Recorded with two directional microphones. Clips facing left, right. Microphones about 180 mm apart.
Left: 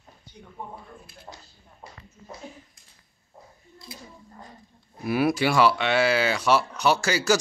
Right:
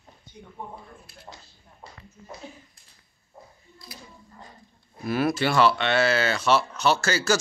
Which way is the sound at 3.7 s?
25° left (ahead or behind).